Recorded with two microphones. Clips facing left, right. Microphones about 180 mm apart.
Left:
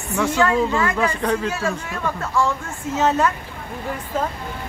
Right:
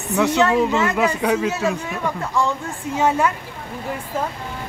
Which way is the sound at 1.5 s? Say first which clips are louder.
Right 2 dB; 20° right (ahead or behind).